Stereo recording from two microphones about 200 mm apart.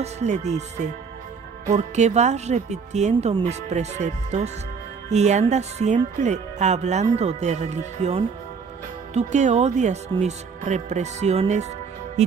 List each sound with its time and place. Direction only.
0.0 s speech: 35° right (ahead or behind)